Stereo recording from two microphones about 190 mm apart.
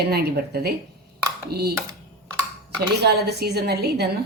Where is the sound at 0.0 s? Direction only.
55° right (ahead or behind).